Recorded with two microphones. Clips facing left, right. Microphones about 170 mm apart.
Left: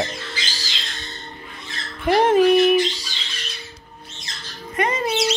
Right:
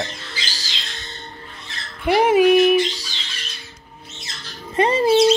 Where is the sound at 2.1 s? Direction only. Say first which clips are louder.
Right 1 dB; 10° right (ahead or behind).